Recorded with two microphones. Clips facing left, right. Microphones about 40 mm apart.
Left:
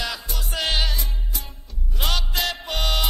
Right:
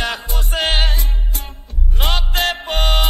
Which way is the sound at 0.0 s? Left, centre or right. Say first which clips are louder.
Right 6 dB; right.